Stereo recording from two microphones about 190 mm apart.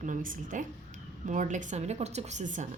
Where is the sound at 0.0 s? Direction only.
45° right (ahead or behind).